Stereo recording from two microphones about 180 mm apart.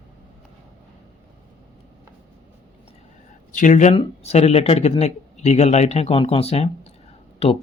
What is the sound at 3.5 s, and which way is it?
Speech, 45° left (ahead or behind).